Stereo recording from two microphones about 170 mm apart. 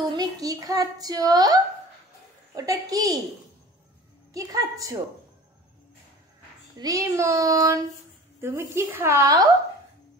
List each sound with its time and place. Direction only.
0.1 s a child's voice: 20° right (ahead or behind)
4.3 s a child's voice: 20° right (ahead or behind)
6.8 s a child's voice: 20° right (ahead or behind)